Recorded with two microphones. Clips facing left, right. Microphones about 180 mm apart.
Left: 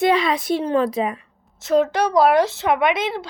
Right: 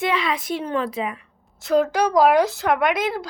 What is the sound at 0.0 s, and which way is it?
A woman's voice, 40° left (ahead or behind).